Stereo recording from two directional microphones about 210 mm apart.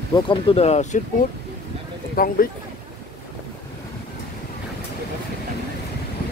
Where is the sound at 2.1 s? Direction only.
40° left (ahead or behind).